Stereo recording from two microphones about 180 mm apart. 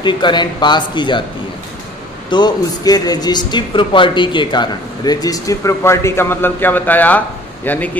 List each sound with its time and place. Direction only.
0.0 s speech: 25° left (ahead or behind)
2.2 s speech: 25° left (ahead or behind); by 8.0 s 10° left (ahead or behind)